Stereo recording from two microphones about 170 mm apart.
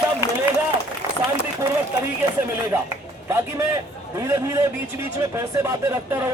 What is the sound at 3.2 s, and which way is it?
Speech, 15° right (ahead or behind).